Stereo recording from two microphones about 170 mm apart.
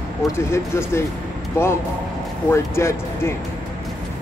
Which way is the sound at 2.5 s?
15° left (ahead or behind).